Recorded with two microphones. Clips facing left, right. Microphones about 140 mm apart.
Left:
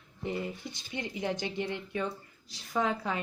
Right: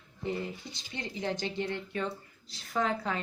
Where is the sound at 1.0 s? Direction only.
15° left (ahead or behind).